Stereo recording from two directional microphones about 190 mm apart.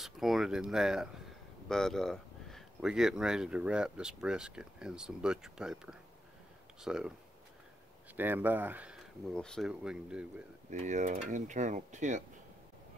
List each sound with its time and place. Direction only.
0.0 s speech: centre (ahead or behind)
8.2 s speech: 10° right (ahead or behind)
9.3 s speech: 5° left (ahead or behind)
10.7 s speech: 40° right (ahead or behind)